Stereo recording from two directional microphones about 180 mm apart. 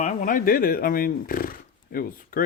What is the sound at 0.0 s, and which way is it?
Speech, 40° left (ahead or behind).